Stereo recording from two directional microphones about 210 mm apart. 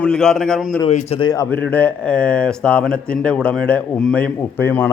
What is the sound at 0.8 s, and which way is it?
Speech, 30° left (ahead or behind).